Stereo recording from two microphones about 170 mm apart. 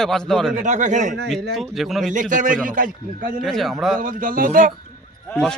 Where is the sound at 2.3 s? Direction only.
50° right (ahead or behind).